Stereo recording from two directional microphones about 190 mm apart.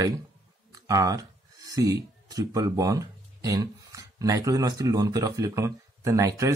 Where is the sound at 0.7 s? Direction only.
20° right (ahead or behind).